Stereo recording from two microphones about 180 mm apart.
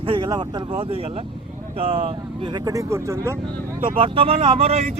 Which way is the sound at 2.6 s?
15° right (ahead or behind).